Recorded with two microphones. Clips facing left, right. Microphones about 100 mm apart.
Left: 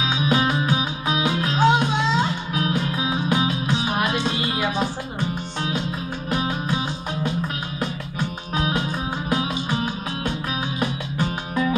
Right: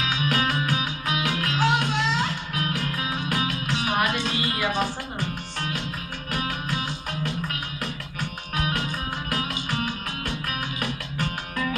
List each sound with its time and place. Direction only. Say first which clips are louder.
0.0 s music: left 4 dB; 20° left (ahead or behind)
6.3 s music: left 5 dB; 20° left (ahead or behind)
8.5 s music: left 4 dB; 20° left (ahead or behind)
10.8 s music: left 5 dB; 20° left (ahead or behind)